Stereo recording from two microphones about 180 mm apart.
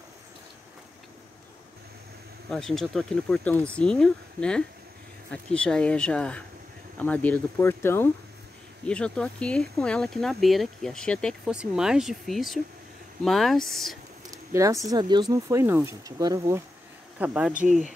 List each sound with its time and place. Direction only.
2.5 s speech: centre (ahead or behind)
14.2 s speech: 20° right (ahead or behind)
17.2 s speech: 10° right (ahead or behind)
17.6 s speech: 45° right (ahead or behind)